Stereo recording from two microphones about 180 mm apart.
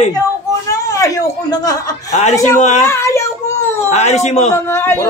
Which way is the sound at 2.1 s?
40° left (ahead or behind).